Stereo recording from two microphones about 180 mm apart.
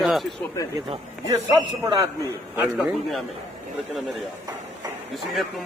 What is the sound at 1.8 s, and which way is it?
Speech, 15° right (ahead or behind).